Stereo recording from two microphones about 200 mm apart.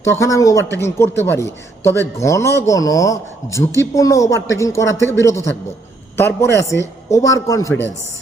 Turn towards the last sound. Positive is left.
turn(degrees=15)  # may be behind; listen again after turning